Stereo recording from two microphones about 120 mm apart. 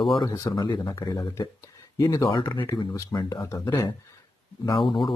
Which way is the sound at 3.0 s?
30° left (ahead or behind).